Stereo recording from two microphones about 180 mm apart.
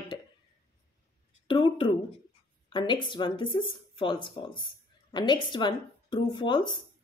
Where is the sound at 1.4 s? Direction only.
30° left (ahead or behind).